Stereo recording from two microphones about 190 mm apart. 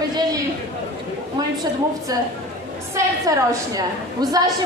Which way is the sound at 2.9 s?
15° right (ahead or behind).